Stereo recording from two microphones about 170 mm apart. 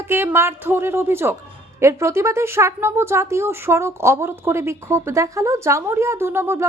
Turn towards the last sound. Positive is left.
turn(degrees=-15)  # may be behind; listen again after turning